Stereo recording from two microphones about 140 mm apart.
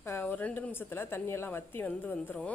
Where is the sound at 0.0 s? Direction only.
15° left (ahead or behind).